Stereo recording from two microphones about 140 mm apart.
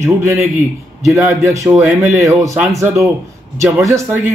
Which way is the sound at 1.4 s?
20° right (ahead or behind).